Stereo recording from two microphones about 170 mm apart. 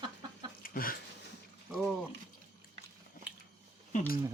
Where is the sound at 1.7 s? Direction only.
Centre (ahead or behind).